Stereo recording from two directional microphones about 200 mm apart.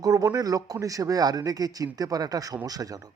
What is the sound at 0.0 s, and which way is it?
A man's voice, 20° right (ahead or behind).